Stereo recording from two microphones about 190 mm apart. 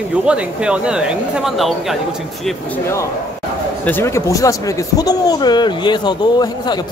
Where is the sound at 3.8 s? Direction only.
10° left (ahead or behind).